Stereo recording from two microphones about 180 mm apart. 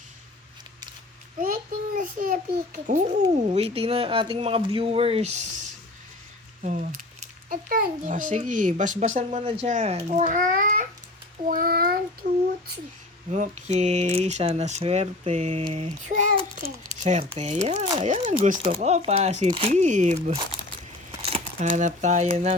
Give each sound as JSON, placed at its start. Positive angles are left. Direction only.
{"t": 2.0, "sound": "a child's voice", "side_deg": -50}
{"t": 12.2, "sound": "a sound", "side_deg": -65}
{"t": 13.3, "sound": "a child's voice", "side_deg": -40}
{"t": 21.2, "sound": "crumpling", "side_deg": -30}
{"t": 21.7, "sound": "a child's voice", "side_deg": -40}